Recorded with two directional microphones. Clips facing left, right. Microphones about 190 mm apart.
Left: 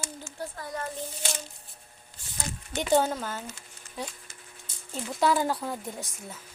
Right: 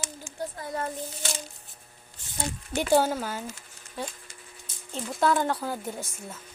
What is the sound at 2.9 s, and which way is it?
Speech, 5° right (ahead or behind).